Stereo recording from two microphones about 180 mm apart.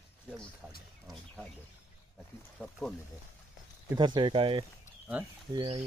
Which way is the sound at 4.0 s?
25° right (ahead or behind).